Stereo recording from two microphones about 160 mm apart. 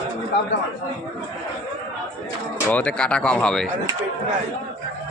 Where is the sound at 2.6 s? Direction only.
10° left (ahead or behind).